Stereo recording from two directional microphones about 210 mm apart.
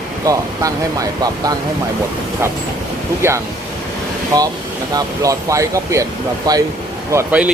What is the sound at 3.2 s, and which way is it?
Speech, 10° right (ahead or behind).